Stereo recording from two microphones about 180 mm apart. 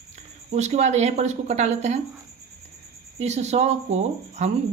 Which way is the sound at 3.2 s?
40° right (ahead or behind).